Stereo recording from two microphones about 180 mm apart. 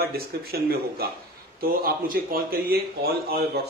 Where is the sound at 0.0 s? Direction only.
60° right (ahead or behind).